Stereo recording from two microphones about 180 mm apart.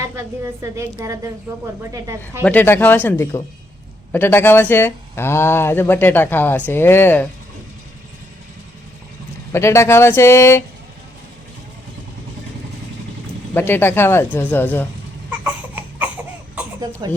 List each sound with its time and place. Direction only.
0.0 s a woman's voice: 15° right (ahead or behind)
2.4 s speech: 10° left (ahead or behind)
9.5 s speech: 15° left (ahead or behind)
13.5 s speech: 10° left (ahead or behind)
15.3 s crying: 10° right (ahead or behind)
17.0 s speech: 25° right (ahead or behind)